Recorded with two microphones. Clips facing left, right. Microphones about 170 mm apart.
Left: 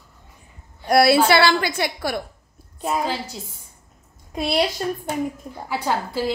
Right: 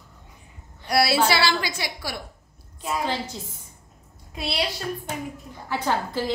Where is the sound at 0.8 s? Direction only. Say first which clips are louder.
Left 6 dB; 55° left (ahead or behind).